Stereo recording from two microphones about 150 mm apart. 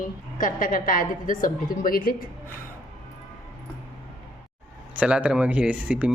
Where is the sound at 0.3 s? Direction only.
65° left (ahead or behind).